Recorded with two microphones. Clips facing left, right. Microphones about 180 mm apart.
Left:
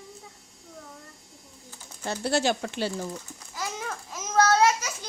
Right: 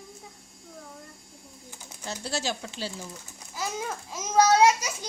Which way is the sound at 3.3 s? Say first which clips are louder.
Right 2 dB; 10° right (ahead or behind).